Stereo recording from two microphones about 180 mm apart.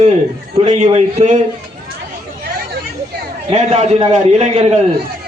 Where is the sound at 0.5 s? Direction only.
35° right (ahead or behind).